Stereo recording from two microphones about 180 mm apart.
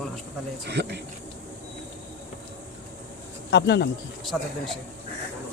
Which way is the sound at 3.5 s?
70° left (ahead or behind).